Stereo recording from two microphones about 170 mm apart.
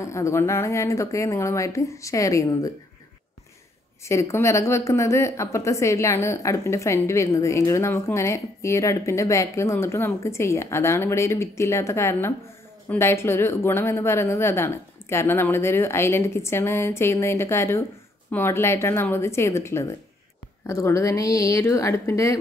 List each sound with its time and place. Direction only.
0.0 s speech: 15° left (ahead or behind)
4.0 s speech: 15° left (ahead or behind)